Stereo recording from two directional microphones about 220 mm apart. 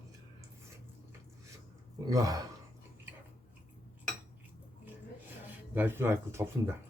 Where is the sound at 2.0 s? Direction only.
15° right (ahead or behind).